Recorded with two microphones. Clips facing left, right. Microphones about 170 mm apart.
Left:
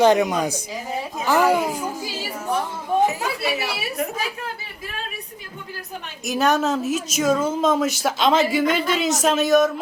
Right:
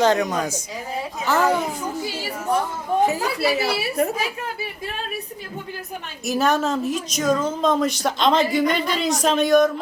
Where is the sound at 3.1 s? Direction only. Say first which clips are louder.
Right 3 dB; 35° right (ahead or behind).